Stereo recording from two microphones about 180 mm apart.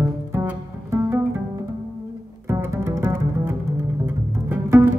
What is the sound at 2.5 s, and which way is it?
Music, 15° right (ahead or behind).